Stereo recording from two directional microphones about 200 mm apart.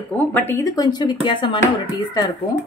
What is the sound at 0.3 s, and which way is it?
Speech, 10° left (ahead or behind).